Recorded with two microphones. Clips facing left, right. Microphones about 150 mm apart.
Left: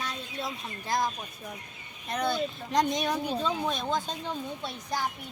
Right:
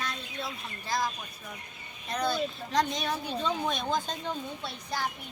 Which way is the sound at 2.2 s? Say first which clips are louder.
Even; 20° left (ahead or behind).